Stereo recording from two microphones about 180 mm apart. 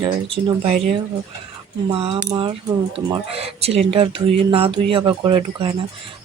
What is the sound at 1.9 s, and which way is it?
Speech, 30° right (ahead or behind).